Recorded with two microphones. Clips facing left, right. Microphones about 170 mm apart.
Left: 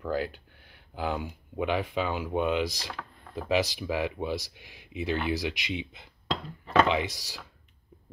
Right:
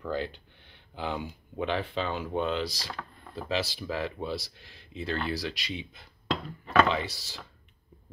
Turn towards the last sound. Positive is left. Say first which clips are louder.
# left 3 dB
turn(degrees=10)  # may be behind; listen again after turning